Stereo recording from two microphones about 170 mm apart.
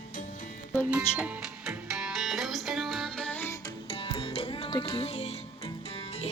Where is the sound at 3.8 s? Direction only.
35° left (ahead or behind).